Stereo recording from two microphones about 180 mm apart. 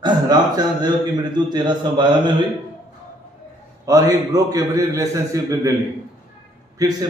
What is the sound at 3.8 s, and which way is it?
A man's voice, 20° right (ahead or behind).